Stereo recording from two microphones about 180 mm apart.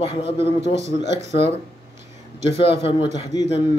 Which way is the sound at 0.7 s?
40° right (ahead or behind).